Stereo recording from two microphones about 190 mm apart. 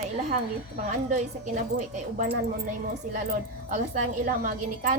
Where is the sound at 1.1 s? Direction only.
40° right (ahead or behind).